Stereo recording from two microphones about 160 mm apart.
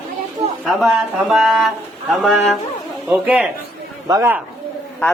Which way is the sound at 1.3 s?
Centre (ahead or behind).